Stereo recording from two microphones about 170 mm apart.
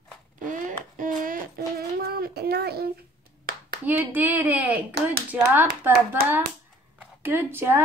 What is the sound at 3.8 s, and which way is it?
A woman's voice, 10° right (ahead or behind).